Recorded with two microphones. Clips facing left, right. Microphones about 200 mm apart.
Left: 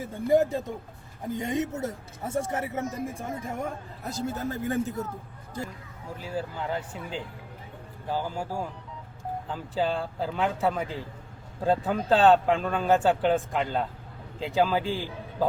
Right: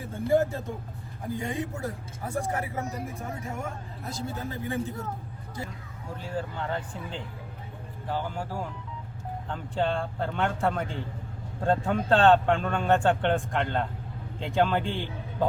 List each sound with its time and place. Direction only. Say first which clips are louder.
0.0 s speech: left 2 dB; 20° left (ahead or behind)
4.1 s a man's voice: left 4 dB; 40° left (ahead or behind)
6.2 s a man's voice: left 1 dB; 5° left (ahead or behind)